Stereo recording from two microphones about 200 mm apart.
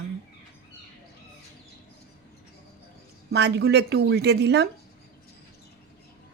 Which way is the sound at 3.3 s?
60° right (ahead or behind).